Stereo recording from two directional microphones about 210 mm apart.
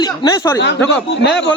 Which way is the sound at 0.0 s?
20° left (ahead or behind).